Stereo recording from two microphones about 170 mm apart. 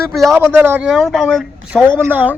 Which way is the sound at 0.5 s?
15° right (ahead or behind).